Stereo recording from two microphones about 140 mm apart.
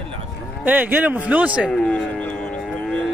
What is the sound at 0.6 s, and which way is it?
Speech, 15° right (ahead or behind).